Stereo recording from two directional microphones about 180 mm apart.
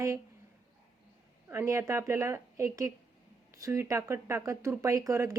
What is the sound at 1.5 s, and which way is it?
Speech, 15° right (ahead or behind).